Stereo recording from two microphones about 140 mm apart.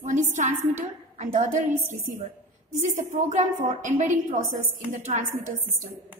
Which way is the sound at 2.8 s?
65° right (ahead or behind).